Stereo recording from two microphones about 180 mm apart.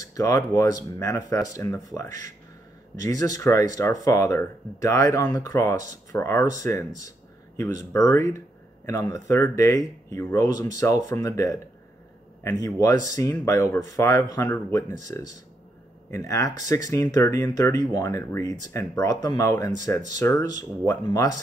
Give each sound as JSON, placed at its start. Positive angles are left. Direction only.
{"t": 0.0, "sound": "speech", "side_deg": 20}